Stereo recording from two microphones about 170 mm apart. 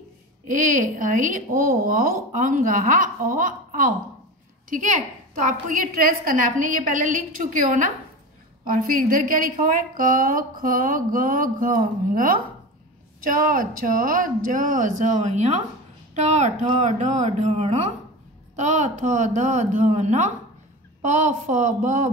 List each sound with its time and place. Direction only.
0.5 s a woman's voice: 50° right (ahead or behind)